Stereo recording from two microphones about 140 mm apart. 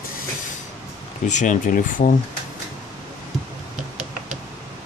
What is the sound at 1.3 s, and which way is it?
Speech, 65° left (ahead or behind).